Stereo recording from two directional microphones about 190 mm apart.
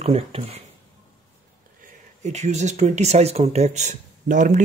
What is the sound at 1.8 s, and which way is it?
Speech, 35° right (ahead or behind).